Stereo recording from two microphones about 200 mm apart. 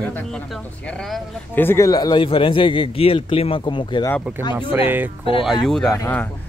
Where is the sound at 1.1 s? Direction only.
10° left (ahead or behind).